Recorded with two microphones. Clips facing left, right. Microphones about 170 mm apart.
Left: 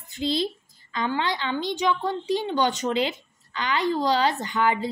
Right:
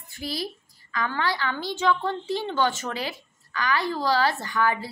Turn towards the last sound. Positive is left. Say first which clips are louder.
# left 2 dB
turn(degrees=20)  # may be behind; listen again after turning